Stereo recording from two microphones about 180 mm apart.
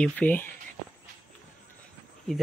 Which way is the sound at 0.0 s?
10° left (ahead or behind).